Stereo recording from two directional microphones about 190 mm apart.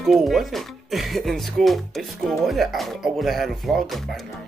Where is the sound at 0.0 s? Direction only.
Centre (ahead or behind).